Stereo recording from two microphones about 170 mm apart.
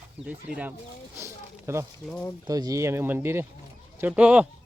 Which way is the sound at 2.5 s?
20° right (ahead or behind).